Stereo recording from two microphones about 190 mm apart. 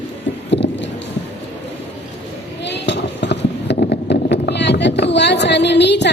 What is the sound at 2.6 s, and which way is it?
Clip-clop, 65° left (ahead or behind).